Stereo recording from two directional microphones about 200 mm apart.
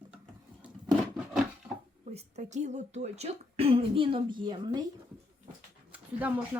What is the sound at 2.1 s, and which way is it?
Speech, 35° right (ahead or behind).